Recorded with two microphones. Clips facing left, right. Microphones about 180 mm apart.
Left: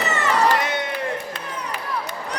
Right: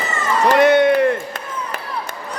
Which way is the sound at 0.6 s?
60° right (ahead or behind).